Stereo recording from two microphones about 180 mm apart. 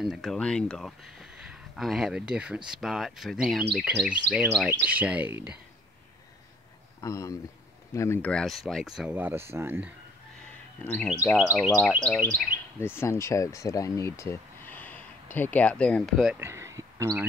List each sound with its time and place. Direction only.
0.0 s speech: centre (ahead or behind)
7.0 s speech: 20° left (ahead or behind); by 9.9 s 10° right (ahead or behind)
10.8 s speech: 5° left (ahead or behind)
12.4 s speech: 15° left (ahead or behind)
16.3 s a sound: 15° right (ahead or behind)